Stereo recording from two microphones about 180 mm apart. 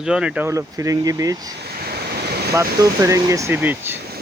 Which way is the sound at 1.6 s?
60° right (ahead or behind).